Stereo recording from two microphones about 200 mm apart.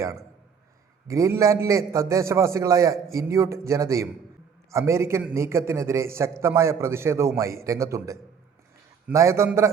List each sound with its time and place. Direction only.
1.0 s a man's voice: 15° right (ahead or behind)